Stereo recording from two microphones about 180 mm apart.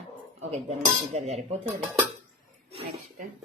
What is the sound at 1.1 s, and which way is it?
Speech, 35° right (ahead or behind).